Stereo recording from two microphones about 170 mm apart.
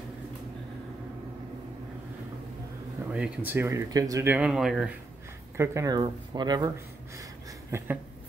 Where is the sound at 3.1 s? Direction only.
10° right (ahead or behind).